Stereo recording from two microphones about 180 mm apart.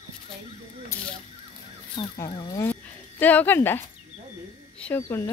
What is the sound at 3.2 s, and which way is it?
Speech, 10° left (ahead or behind).